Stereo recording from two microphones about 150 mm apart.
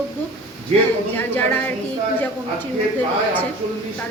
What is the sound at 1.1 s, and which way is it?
Speech, 10° left (ahead or behind).